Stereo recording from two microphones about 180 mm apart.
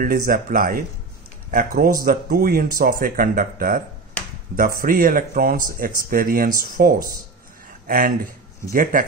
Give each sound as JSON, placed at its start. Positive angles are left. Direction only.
{"t": 0.0, "sound": "speech", "side_deg": -55}